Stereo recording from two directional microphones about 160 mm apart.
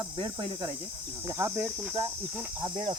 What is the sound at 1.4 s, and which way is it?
Speech, 15° right (ahead or behind).